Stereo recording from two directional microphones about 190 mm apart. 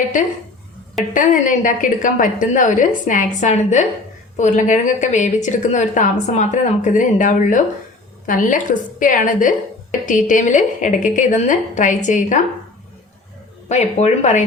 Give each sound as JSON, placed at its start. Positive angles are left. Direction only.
{"t": 1.1, "sound": "a woman's voice", "side_deg": 45}
{"t": 13.7, "sound": "a woman's voice", "side_deg": 35}